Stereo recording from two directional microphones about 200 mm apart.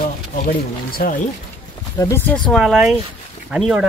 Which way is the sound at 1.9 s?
15° left (ahead or behind).